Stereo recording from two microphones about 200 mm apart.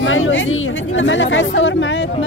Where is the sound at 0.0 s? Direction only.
80° left; by 2.0 s 65° left (ahead or behind).